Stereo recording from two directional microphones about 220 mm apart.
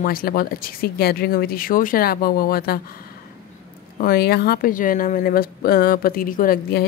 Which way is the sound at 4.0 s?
45° left (ahead or behind).